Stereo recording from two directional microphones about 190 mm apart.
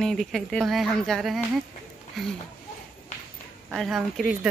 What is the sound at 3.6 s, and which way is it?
Speech, centre (ahead or behind).